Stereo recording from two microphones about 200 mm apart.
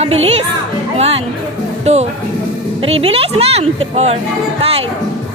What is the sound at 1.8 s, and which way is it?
Speech, 35° right (ahead or behind).